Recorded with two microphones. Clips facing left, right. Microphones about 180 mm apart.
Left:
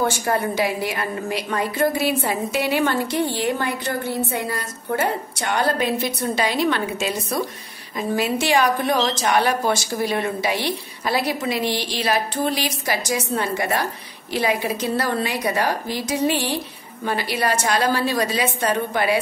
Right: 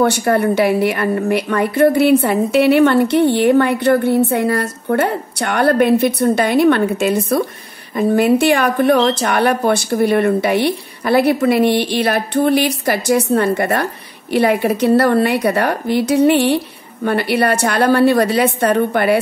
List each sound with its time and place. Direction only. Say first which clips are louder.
0.0 s a woman's voice: right 7 dB; 65° right (ahead or behind)